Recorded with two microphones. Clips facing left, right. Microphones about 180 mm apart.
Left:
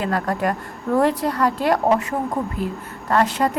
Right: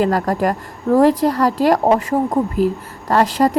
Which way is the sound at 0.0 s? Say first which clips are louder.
Right 5 dB; 40° right (ahead or behind).